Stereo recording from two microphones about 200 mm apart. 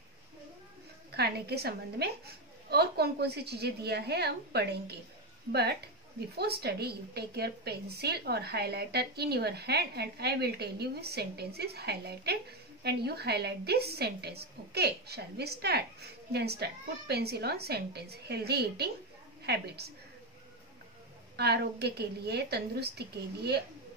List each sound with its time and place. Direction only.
1.1 s a woman's voice: 55° right (ahead or behind)
21.4 s a woman's voice: 55° right (ahead or behind)